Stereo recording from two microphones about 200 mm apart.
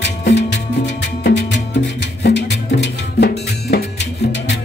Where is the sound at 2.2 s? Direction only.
60° left (ahead or behind).